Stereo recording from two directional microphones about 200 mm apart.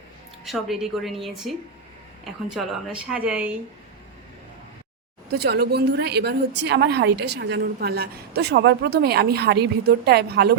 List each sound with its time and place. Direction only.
0.4 s a woman's voice: centre (ahead or behind)
5.3 s a woman's voice: 55° right (ahead or behind)